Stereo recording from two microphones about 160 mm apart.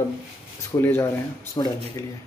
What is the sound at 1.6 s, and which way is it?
Speech, 30° left (ahead or behind).